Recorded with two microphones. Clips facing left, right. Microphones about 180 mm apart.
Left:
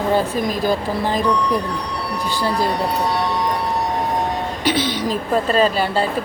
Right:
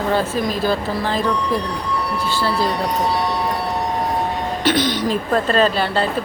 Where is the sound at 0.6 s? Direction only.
15° left (ahead or behind).